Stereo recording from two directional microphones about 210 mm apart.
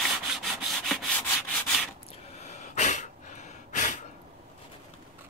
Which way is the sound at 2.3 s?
30° left (ahead or behind).